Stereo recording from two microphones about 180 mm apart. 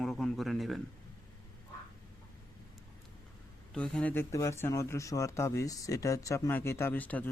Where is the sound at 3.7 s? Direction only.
5° left (ahead or behind).